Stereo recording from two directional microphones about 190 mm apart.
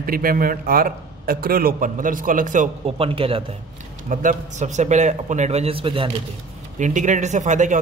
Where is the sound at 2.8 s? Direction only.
30° right (ahead or behind).